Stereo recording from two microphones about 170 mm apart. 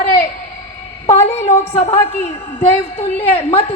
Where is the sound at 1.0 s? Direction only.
40° left (ahead or behind).